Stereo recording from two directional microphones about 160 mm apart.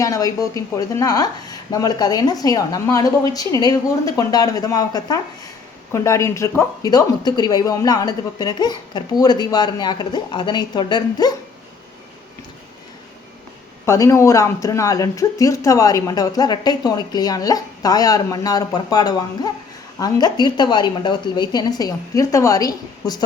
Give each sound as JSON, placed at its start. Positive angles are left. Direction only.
{"t": 0.0, "sound": "speech", "side_deg": 20}
{"t": 13.8, "sound": "speech", "side_deg": 15}